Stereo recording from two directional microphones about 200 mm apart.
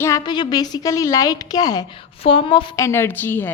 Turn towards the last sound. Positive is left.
turn(degrees=10)  # may be behind; listen again after turning